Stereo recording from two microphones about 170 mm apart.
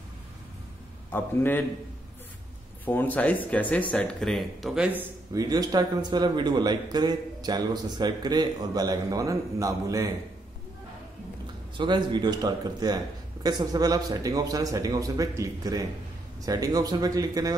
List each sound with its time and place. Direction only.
1.1 s speech: 10° left (ahead or behind)
2.8 s speech: 10° left (ahead or behind); by 5.0 s 5° right (ahead or behind)
5.3 s a man's voice: 20° right (ahead or behind)
11.7 s a man's voice: 25° right (ahead or behind)